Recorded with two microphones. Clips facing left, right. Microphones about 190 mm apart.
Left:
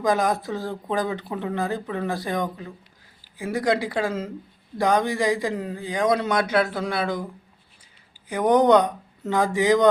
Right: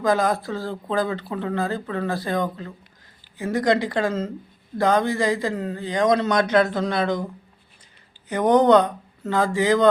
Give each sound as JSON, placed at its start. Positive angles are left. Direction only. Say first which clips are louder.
{"t": 0.0, "sound": "speech", "louder": "right 1 dB", "side_deg": 15}
{"t": 8.3, "sound": "speech", "louder": "right 1 dB", "side_deg": 10}